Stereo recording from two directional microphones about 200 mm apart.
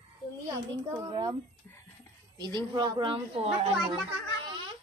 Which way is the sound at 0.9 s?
20° right (ahead or behind).